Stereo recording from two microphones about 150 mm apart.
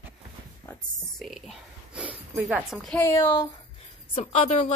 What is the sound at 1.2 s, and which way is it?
A woman's voice, centre (ahead or behind).